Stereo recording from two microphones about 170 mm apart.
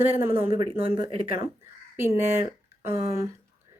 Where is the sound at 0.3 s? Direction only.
30° right (ahead or behind).